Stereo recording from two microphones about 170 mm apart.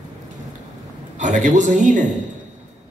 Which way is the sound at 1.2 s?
45° right (ahead or behind).